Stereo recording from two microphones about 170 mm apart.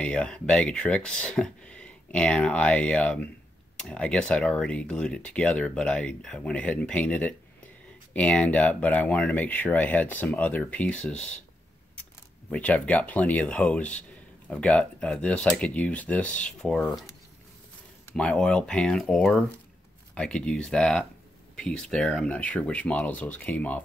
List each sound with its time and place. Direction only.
0.0 s speech: 5° left (ahead or behind)
12.4 s speech: 10° left (ahead or behind)
18.1 s speech: 5° left (ahead or behind)